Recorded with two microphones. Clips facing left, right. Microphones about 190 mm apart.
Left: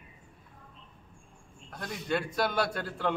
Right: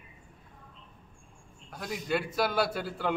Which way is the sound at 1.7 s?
5° right (ahead or behind).